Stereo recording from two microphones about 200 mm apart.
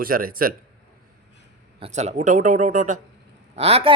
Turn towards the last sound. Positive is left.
turn(degrees=-30)  # may be behind; listen again after turning